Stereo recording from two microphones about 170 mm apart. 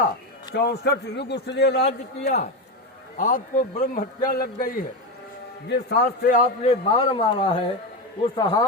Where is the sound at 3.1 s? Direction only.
50° left (ahead or behind).